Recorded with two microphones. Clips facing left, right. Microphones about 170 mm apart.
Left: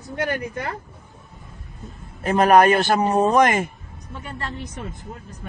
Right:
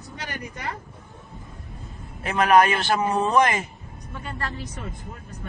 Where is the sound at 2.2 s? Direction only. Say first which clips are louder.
Left 3 dB; 40° left (ahead or behind).